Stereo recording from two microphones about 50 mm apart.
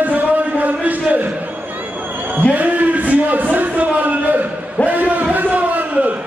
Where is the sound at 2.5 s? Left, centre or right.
Right.